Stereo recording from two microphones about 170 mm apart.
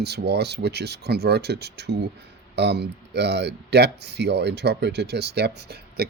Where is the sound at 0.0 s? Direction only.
75° right (ahead or behind).